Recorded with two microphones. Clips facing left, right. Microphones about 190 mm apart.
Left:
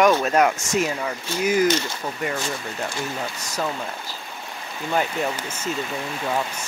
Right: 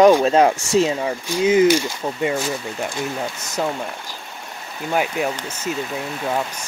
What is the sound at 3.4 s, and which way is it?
Speech, 20° right (ahead or behind).